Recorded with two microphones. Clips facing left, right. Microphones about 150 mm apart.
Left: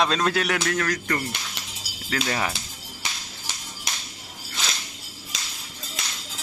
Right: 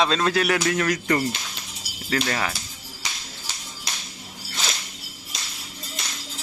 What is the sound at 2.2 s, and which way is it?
Speech, 10° left (ahead or behind).